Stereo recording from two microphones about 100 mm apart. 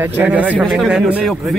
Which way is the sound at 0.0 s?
20° right (ahead or behind).